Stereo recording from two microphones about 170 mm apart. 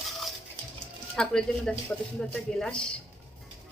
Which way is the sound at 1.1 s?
5° left (ahead or behind).